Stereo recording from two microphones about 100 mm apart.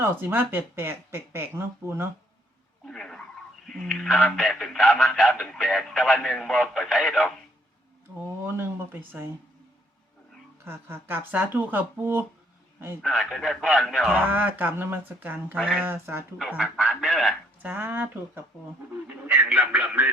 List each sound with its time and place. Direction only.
0.0 s speech: 20° right (ahead or behind)
2.8 s speech: 5° left (ahead or behind)
8.4 s speech: 25° right (ahead or behind)
10.6 s speech: 25° right (ahead or behind)
13.0 s speech: centre (ahead or behind)
14.3 s speech: 20° right (ahead or behind)
15.5 s speech: 5° right (ahead or behind)
15.8 s speech: 20° right (ahead or behind)
16.6 s speech: 5° right (ahead or behind)
17.6 s speech: 15° right (ahead or behind)